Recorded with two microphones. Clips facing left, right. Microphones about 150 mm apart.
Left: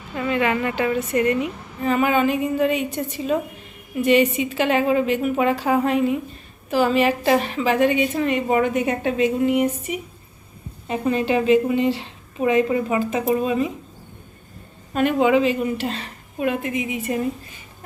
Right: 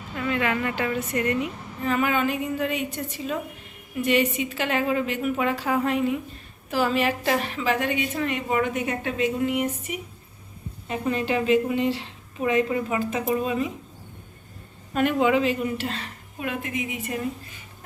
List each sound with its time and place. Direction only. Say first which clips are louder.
0.2 s a woman's voice: left 4 dB; 15° left (ahead or behind)
10.8 s a woman's voice: left 4 dB; 25° left (ahead or behind)
14.9 s a woman's voice: left 3 dB; 25° left (ahead or behind)